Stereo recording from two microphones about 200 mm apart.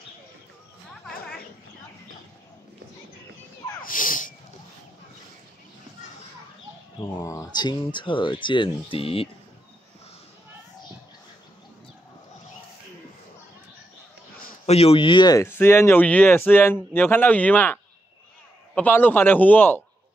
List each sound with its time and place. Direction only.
3.8 s a sound: 40° left (ahead or behind)
7.0 s speech: 15° left (ahead or behind)
14.7 s speech: 30° left (ahead or behind); by 17.7 s 10° left (ahead or behind)
18.8 s speech: 10° left (ahead or behind)